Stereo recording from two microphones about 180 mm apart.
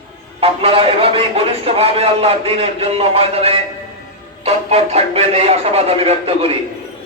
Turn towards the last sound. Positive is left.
turn(degrees=-30)  # may be behind; listen again after turning